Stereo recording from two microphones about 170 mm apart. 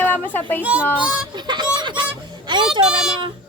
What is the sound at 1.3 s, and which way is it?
Speech, 25° right (ahead or behind).